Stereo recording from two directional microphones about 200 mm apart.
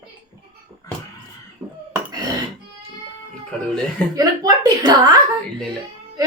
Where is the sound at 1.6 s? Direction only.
15° right (ahead or behind).